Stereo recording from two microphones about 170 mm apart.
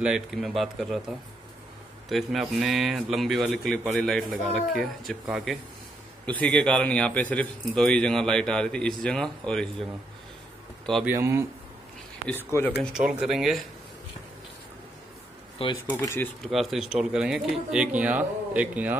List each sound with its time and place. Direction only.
0.0 s speech: centre (ahead or behind)
11.1 s speech: 15° right (ahead or behind)
12.4 s speech: 10° left (ahead or behind)
12.9 s speech: 5° right (ahead or behind)
15.6 s speech: 30° left (ahead or behind)
16.0 s speech: 15° left (ahead or behind)
16.4 s speech: centre (ahead or behind)